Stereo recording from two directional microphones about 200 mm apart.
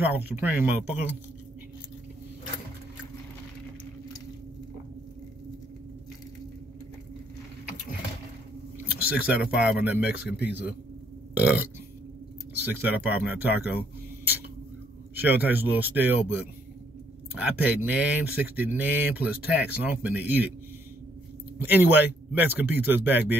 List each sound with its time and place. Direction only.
0.0 s speech: 10° right (ahead or behind)
9.3 s speech: 5° right (ahead or behind)
11.3 s burping: 5° right (ahead or behind)
12.6 s speech: 10° right (ahead or behind)
15.1 s speech: 10° right (ahead or behind)
17.4 s speech: 10° right (ahead or behind)
21.5 s speech: 10° right (ahead or behind)